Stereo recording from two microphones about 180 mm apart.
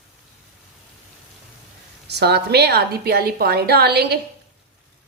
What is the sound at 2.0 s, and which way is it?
A woman's voice, 65° right (ahead or behind).